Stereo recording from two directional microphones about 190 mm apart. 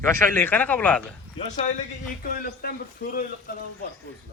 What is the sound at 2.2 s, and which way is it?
Speech, 50° left (ahead or behind).